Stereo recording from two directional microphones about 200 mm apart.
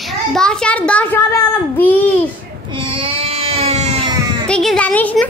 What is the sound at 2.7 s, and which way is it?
Baby cry, 25° right (ahead or behind).